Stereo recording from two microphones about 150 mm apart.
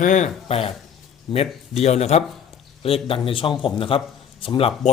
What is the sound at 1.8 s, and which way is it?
A man's voice, 45° left (ahead or behind).